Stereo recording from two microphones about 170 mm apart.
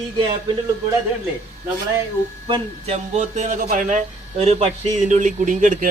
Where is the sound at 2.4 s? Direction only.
35° right (ahead or behind).